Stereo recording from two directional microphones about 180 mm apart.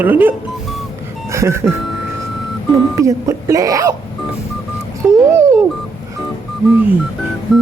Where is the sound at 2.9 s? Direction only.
15° right (ahead or behind).